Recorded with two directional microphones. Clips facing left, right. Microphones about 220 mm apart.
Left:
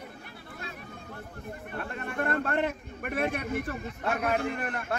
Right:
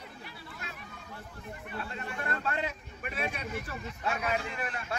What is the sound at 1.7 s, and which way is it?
A man's voice, 55° left (ahead or behind).